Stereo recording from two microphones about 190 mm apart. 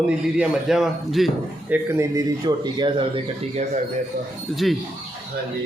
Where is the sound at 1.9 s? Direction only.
15° right (ahead or behind).